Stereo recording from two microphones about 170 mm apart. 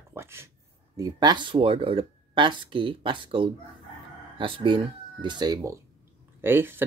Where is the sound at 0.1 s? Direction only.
15° right (ahead or behind).